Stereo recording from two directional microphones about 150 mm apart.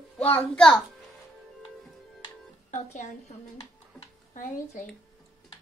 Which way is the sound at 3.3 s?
50° left (ahead or behind).